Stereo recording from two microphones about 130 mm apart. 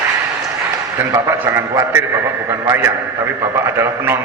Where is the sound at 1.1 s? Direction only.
20° right (ahead or behind).